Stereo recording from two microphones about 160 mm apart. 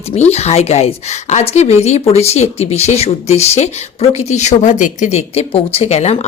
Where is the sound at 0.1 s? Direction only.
40° left (ahead or behind).